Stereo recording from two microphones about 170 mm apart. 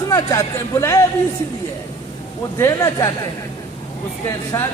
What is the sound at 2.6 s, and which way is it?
Speech, 20° left (ahead or behind).